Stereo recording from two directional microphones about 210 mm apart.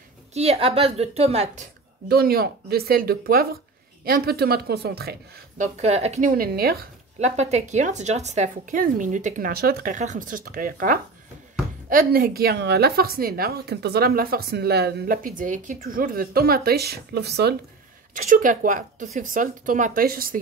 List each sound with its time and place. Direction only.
0.3 s a woman's voice: 30° right (ahead or behind)
2.0 s a woman's voice: 45° right (ahead or behind)
5.6 s speech: 30° right (ahead or behind)
7.2 s a woman's voice: 30° right (ahead or behind); by 17.6 s 50° right (ahead or behind)
18.1 s speech: 40° right (ahead or behind)